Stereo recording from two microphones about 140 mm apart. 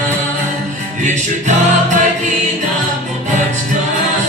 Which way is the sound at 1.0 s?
60° right (ahead or behind).